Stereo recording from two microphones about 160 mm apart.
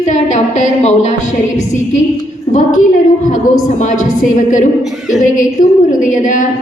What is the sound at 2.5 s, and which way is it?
A woman's voice, 55° left (ahead or behind).